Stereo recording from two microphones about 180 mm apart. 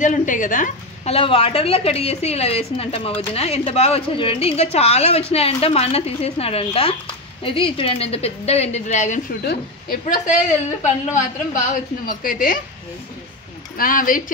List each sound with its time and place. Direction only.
0.0 s a woman's voice: 45° left (ahead or behind)
1.1 s a woman's voice: 30° left (ahead or behind)
9.4 s a woman's voice: 60° left (ahead or behind)
13.7 s a woman's voice: 50° left (ahead or behind)